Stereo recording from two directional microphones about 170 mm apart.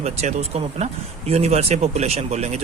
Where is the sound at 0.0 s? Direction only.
40° right (ahead or behind).